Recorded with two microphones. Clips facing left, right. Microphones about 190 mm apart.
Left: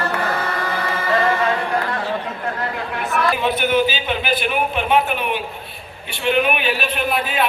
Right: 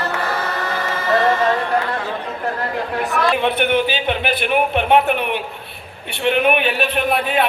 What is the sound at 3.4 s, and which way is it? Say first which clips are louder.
A man's voice: right 1 dB; 60° right (ahead or behind).